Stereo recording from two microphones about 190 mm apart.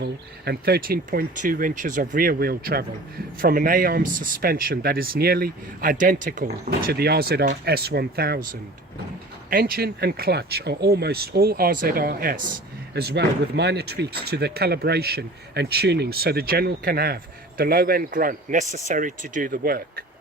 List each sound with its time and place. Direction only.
0.0 s speech: 55° right (ahead or behind)
9.5 s speech: 50° right (ahead or behind)